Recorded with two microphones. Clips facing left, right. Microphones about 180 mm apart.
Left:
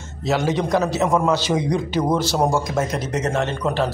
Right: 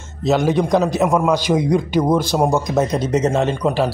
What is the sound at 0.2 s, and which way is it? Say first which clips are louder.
Speech: right 4 dB; 15° right (ahead or behind).